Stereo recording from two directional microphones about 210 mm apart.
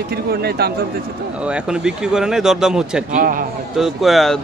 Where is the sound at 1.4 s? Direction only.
5° right (ahead or behind).